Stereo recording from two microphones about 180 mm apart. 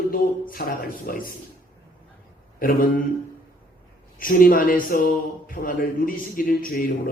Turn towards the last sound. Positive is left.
turn(degrees=50)  # may be behind; listen again after turning